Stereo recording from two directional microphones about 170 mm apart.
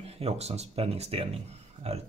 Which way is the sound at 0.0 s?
35° right (ahead or behind).